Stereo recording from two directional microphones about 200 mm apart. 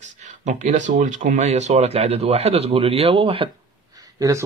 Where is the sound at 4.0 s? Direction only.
15° right (ahead or behind).